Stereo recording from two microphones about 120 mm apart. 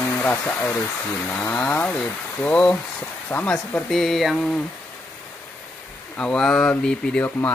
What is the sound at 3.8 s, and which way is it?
Speech, centre (ahead or behind).